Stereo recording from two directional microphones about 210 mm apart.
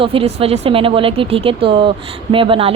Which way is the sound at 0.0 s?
25° right (ahead or behind).